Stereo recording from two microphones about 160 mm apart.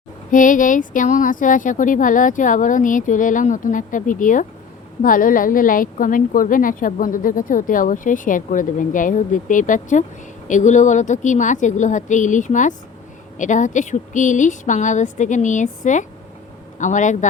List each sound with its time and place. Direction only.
0.3 s a woman's voice: 55° left (ahead or behind)